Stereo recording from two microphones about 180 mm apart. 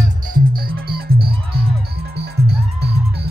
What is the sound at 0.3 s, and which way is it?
Music, 55° right (ahead or behind).